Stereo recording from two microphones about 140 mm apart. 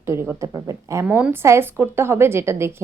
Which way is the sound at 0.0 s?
20° right (ahead or behind).